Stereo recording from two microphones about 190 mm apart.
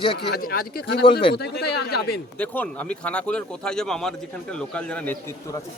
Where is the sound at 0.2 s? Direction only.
55° left (ahead or behind).